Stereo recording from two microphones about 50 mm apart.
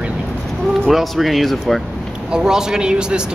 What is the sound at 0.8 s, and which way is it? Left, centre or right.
Speech, centre.